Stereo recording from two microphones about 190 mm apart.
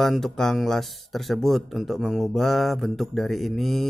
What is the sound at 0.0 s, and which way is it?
Speech, centre (ahead or behind).